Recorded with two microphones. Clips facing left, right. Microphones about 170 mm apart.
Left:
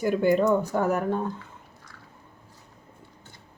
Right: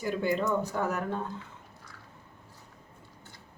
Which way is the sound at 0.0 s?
50° left (ahead or behind).